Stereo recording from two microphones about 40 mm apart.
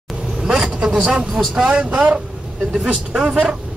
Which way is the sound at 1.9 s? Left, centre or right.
Right.